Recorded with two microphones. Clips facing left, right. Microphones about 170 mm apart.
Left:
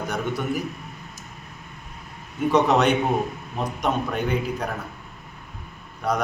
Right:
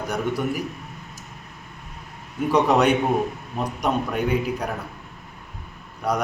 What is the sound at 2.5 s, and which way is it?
A man's voice, 10° right (ahead or behind).